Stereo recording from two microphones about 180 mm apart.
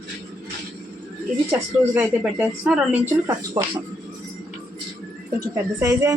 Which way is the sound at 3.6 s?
30° right (ahead or behind).